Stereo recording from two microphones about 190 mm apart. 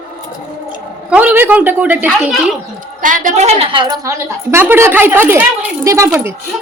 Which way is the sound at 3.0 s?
45° right (ahead or behind).